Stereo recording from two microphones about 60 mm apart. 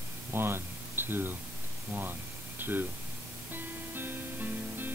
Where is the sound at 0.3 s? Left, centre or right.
Right.